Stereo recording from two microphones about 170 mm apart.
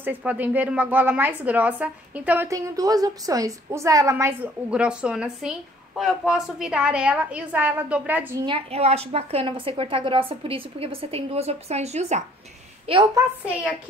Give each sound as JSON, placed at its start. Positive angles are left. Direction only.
{"t": 0.0, "sound": "a woman's voice", "side_deg": -10}
{"t": 8.5, "sound": "a woman's voice", "side_deg": -35}